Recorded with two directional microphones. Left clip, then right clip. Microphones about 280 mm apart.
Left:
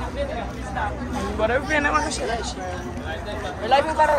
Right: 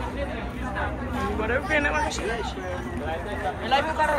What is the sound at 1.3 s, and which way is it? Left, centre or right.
Speech, left.